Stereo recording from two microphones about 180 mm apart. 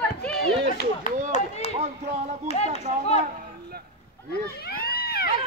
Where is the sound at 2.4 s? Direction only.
35° left (ahead or behind).